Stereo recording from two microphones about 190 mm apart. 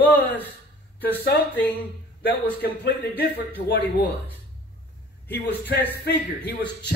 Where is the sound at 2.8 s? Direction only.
55° left (ahead or behind).